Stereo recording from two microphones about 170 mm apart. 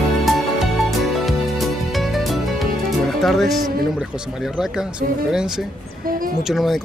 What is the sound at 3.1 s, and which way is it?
Speech, centre (ahead or behind).